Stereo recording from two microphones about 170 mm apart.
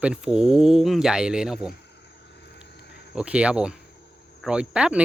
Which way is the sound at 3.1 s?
5° right (ahead or behind).